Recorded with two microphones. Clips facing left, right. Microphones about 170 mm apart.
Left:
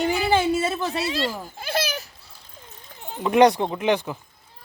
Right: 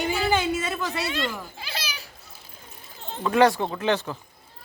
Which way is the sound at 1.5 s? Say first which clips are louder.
Left 10 dB; 50° left (ahead or behind).